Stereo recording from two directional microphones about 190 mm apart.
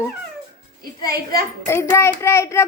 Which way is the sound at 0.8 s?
50° right (ahead or behind).